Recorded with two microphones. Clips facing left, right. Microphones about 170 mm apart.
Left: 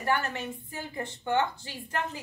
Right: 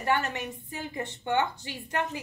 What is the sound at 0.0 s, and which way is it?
A woman's voice, 15° right (ahead or behind).